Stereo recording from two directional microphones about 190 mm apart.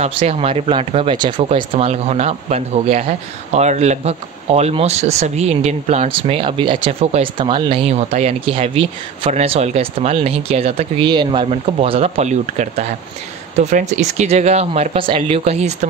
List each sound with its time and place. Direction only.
0.0 s speech: 35° right (ahead or behind)